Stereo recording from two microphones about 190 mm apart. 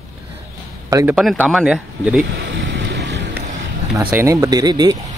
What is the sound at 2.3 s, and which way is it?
Vehicle, 70° right (ahead or behind).